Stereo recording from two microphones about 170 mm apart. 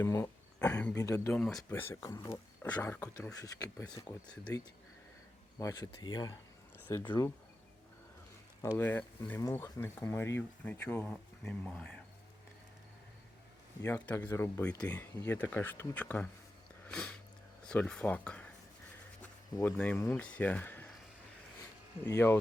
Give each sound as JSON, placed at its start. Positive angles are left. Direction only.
{"t": 0.0, "sound": "speech", "side_deg": 15}
{"t": 0.9, "sound": "speech", "side_deg": 20}
{"t": 1.4, "sound": "speech", "side_deg": 5}
{"t": 1.7, "sound": "speech", "side_deg": 15}
{"t": 6.7, "sound": "speech", "side_deg": 10}
{"t": 8.6, "sound": "speech", "side_deg": 15}
{"t": 13.8, "sound": "speech", "side_deg": 10}
{"t": 19.5, "sound": "speech", "side_deg": 10}
{"t": 22.0, "sound": "speech", "side_deg": 15}